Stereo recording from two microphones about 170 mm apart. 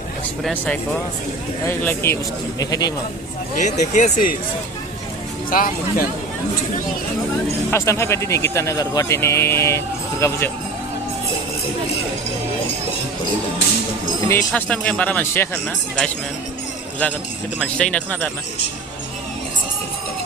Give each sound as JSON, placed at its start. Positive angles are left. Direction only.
{"t": 0.4, "sound": "speech", "side_deg": 5}
{"t": 3.5, "sound": "speech", "side_deg": 45}
{"t": 5.5, "sound": "speech", "side_deg": 55}
{"t": 7.7, "sound": "speech", "side_deg": 15}
{"t": 14.3, "sound": "speech", "side_deg": 10}
{"t": 17.0, "sound": "speech", "side_deg": 10}